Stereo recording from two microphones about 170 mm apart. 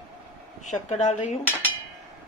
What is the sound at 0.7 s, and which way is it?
Speech, 45° left (ahead or behind).